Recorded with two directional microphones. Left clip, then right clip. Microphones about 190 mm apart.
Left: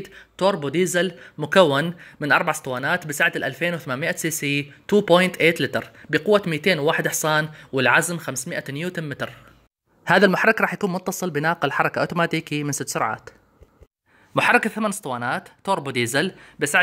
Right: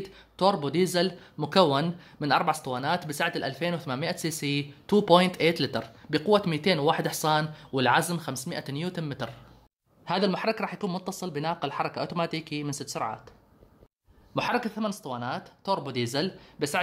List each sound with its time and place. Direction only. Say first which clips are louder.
0.5 s a man's voice: left 4 dB; 10° left (ahead or behind)
10.0 s speech: left 11 dB; 35° left (ahead or behind)
14.3 s speech: left 10 dB; 25° left (ahead or behind)